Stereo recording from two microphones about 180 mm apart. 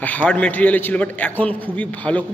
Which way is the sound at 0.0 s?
10° left (ahead or behind).